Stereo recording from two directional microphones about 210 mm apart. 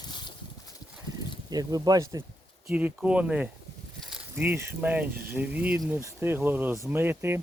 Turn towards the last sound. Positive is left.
turn(degrees=-10)  # may be behind; listen again after turning